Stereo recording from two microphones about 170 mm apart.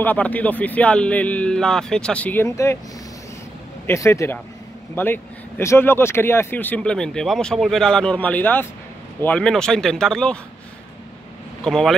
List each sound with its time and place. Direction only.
0.0 s speech: 10° left (ahead or behind)
3.8 s speech: 15° left (ahead or behind)
11.6 s speech: 5° left (ahead or behind)